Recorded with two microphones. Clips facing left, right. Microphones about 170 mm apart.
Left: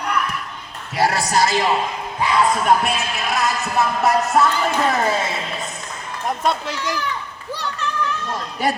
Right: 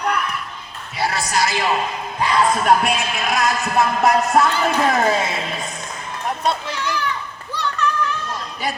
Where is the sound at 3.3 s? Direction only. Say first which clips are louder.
Right 2 dB; 15° right (ahead or behind).